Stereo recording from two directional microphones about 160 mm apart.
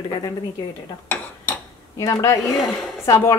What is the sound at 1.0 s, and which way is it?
Cutlery, 10° left (ahead or behind).